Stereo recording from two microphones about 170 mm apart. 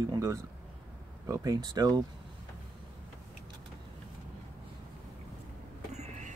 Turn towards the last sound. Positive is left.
turn(degrees=-45)  # may be behind; listen again after turning